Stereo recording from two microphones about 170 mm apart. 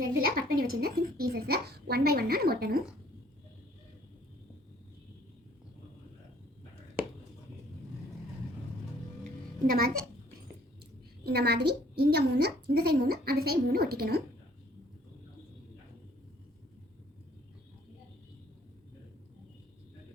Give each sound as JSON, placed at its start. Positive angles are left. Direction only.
{"t": 0.2, "sound": "a woman's voice", "side_deg": -60}
{"t": 9.6, "sound": "a woman's voice", "side_deg": -60}
{"t": 11.2, "sound": "a woman's voice", "side_deg": -70}